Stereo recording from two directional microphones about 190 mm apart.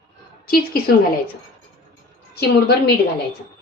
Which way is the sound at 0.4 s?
50° left (ahead or behind).